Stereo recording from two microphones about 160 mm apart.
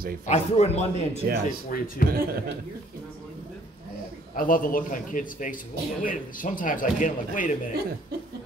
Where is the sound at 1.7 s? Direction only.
60° left (ahead or behind).